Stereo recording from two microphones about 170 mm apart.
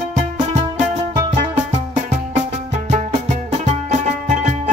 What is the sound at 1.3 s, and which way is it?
Music, 45° right (ahead or behind).